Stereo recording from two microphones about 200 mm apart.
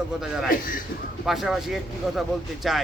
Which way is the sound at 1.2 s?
Centre (ahead or behind).